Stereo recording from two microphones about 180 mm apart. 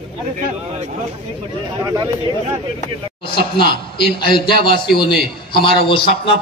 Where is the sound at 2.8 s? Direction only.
30° left (ahead or behind).